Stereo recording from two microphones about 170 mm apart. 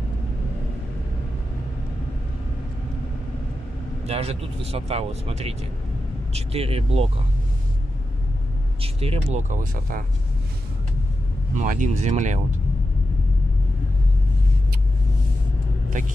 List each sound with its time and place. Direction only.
4.0 s speech: 35° right (ahead or behind)
8.8 s speech: 35° right (ahead or behind); by 10.0 s 50° right (ahead or behind)
11.5 s speech: 50° right (ahead or behind)